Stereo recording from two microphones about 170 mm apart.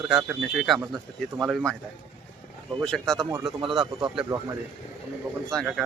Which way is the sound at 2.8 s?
5° left (ahead or behind).